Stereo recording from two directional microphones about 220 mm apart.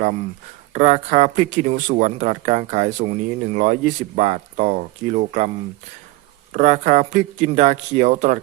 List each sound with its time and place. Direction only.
0.7 s speech: 35° right (ahead or behind)
6.5 s speech: 35° right (ahead or behind)